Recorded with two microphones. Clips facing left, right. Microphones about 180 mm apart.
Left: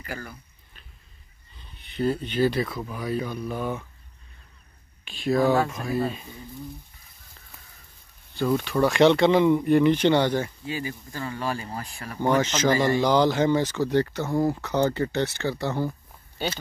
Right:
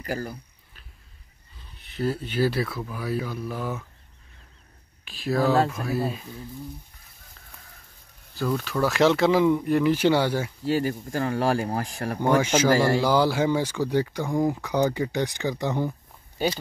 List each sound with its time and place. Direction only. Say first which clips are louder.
0.0 s speech: right 6 dB; 35° right (ahead or behind)
1.6 s a sound: left 2 dB; centre (ahead or behind)
2.2 s speech: left 1 dB; 5° right (ahead or behind)
5.0 s speech: left 2 dB; centre (ahead or behind)
8.4 s speech: left 3 dB; centre (ahead or behind)
10.6 s speech: right 7 dB; 70° right (ahead or behind)
11.1 s speech: right 7 dB; 55° right (ahead or behind)
11.3 s speech: right 6 dB; 80° right
12.2 s speech: right 1 dB; 10° right (ahead or behind)